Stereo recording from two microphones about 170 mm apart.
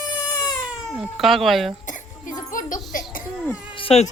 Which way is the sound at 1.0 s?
Centre (ahead or behind).